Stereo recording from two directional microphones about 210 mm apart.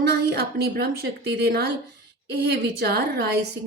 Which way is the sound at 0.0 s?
50° right (ahead or behind).